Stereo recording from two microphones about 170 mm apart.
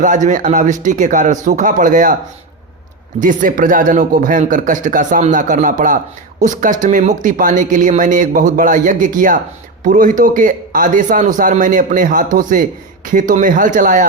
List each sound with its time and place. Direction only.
0.0 s speech: 50° right (ahead or behind)
3.2 s speech: 50° right (ahead or behind)